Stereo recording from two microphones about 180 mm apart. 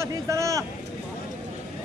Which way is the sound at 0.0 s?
15° right (ahead or behind).